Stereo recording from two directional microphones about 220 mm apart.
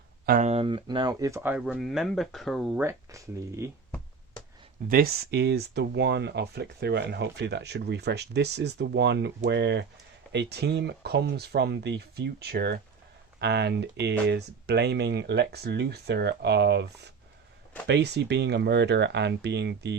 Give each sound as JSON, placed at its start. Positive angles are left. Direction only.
{"t": 0.3, "sound": "speech", "side_deg": -35}
{"t": 2.8, "sound": "speech", "side_deg": -15}
{"t": 4.9, "sound": "speech", "side_deg": -45}